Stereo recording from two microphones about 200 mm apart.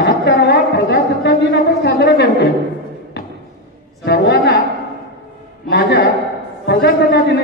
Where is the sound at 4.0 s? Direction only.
60° left (ahead or behind).